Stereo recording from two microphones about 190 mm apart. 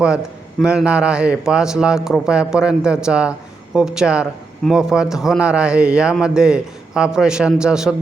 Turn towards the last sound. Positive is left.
turn(degrees=-5)  # may be behind; listen again after turning